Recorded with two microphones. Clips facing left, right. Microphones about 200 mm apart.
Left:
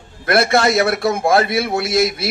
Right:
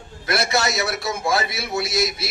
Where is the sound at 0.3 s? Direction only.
55° left (ahead or behind).